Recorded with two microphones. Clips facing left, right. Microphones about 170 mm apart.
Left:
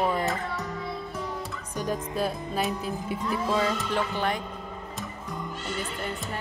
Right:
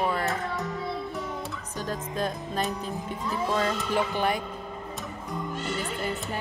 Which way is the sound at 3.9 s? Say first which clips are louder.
Right 2 dB; 10° right (ahead or behind).